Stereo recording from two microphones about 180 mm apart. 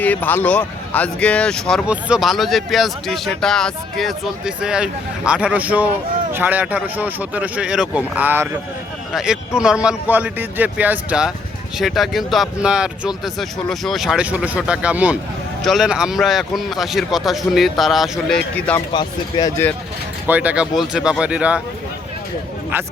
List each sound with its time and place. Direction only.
0.0 s speech: 10° left (ahead or behind)
18.9 s speech: 20° left (ahead or behind)
20.2 s speech: 10° right (ahead or behind)